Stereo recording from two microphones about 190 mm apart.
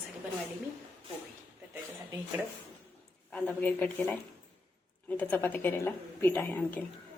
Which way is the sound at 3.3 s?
5° left (ahead or behind).